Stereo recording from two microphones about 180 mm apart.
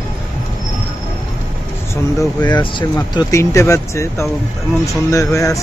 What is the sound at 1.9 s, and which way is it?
Speech, 20° left (ahead or behind).